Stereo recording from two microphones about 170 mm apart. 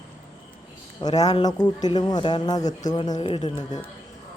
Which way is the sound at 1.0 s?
25° left (ahead or behind).